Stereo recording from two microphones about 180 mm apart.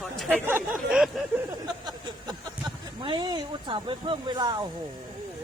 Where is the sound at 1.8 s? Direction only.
25° right (ahead or behind).